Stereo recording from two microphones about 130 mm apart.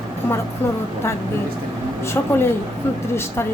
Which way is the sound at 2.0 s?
20° left (ahead or behind).